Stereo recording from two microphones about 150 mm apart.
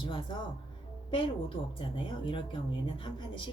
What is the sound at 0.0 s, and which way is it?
Speech, 30° left (ahead or behind).